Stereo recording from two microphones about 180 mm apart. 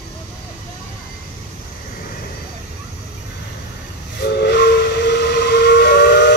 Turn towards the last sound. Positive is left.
turn(degrees=65)  # may be behind; listen again after turning